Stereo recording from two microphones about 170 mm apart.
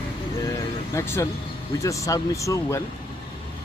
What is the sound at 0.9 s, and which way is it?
Speech, 15° left (ahead or behind).